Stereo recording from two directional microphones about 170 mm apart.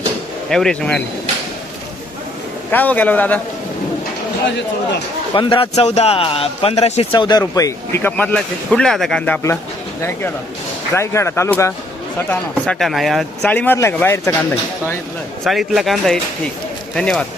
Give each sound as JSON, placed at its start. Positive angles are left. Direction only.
{"t": 0.5, "sound": "speech", "side_deg": 5}
{"t": 2.7, "sound": "speech", "side_deg": 10}
{"t": 5.3, "sound": "speech", "side_deg": 25}
{"t": 12.3, "sound": "speech", "side_deg": 5}
{"t": 15.4, "sound": "speech", "side_deg": 0}